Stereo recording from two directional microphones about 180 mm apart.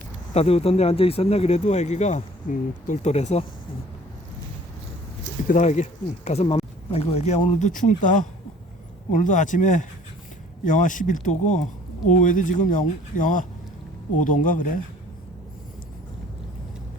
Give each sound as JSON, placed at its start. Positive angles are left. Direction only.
{"t": 0.3, "sound": "speech", "side_deg": 35}
{"t": 5.5, "sound": "speech", "side_deg": 40}